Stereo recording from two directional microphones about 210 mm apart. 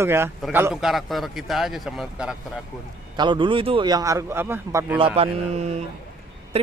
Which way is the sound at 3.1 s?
25° right (ahead or behind).